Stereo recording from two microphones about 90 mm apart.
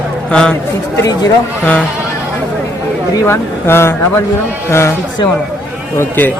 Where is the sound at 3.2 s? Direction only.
25° left (ahead or behind).